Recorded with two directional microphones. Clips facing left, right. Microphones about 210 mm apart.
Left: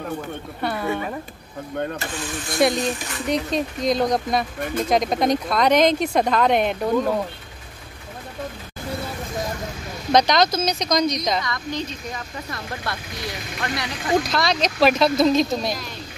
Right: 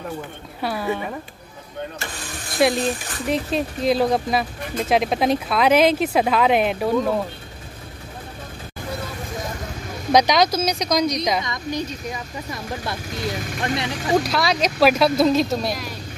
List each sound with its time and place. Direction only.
0.6 s speech: 5° right (ahead or behind)
2.5 s speech: centre (ahead or behind)
10.1 s speech: 10° right (ahead or behind)
13.6 s speech: 25° right (ahead or behind)
14.2 s speech: 5° right (ahead or behind)